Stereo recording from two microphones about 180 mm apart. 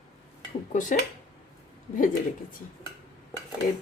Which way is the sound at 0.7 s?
45° left (ahead or behind).